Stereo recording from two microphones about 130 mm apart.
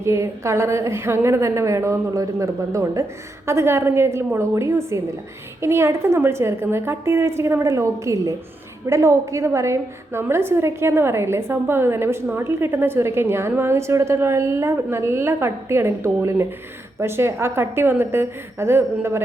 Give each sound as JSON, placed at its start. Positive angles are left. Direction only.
{"t": 0.0, "sound": "a woman's voice", "side_deg": -20}